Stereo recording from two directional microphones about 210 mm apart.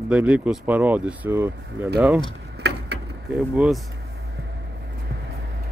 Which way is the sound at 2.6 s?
50° right (ahead or behind).